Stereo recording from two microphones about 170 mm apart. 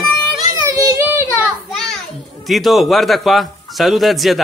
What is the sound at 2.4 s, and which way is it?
A man's voice, centre (ahead or behind).